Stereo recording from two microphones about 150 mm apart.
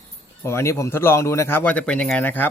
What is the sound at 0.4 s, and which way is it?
Speech, 20° left (ahead or behind).